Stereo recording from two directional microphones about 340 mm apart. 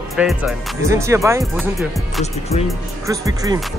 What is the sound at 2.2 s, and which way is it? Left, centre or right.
Speech, centre.